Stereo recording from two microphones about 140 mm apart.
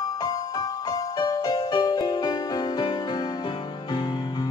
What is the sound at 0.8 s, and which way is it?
Music, 30° left (ahead or behind).